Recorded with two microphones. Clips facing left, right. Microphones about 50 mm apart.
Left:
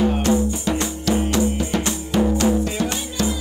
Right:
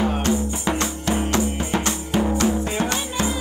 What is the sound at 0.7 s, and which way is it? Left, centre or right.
Music, right.